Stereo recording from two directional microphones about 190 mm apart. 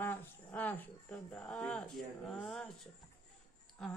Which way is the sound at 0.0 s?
10° left (ahead or behind).